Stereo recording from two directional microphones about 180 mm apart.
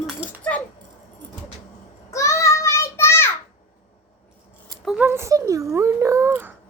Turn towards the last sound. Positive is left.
turn(degrees=-15)  # may be behind; listen again after turning